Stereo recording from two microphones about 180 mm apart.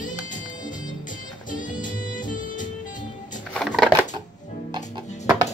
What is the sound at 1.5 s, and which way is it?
Music, 45° left (ahead or behind).